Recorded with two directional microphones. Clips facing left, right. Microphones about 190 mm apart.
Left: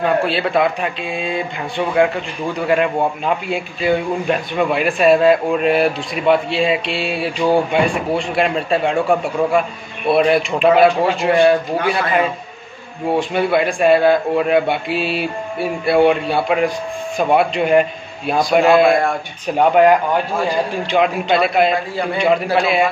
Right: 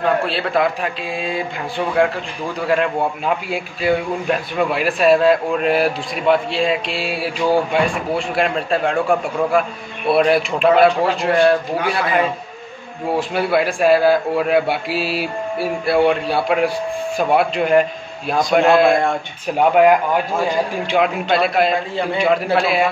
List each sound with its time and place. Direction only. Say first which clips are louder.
0.0 s a man's voice: left 2 dB; centre (ahead or behind)
2.6 s a man's voice: left 2 dB; centre (ahead or behind)